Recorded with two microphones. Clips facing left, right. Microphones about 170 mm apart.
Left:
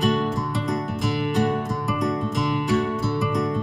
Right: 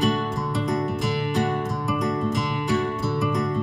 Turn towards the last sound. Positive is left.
turn(degrees=0)  # may be behind; listen again after turning